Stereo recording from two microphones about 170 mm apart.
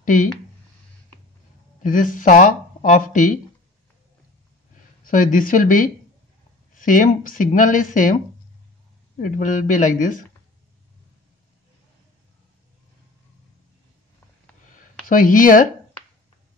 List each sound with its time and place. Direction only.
0.0 s speech: 50° left (ahead or behind)
1.8 s speech: 50° left (ahead or behind)
5.0 s speech: 50° left (ahead or behind)
9.2 s speech: 50° left (ahead or behind)
15.0 s speech: 50° left (ahead or behind)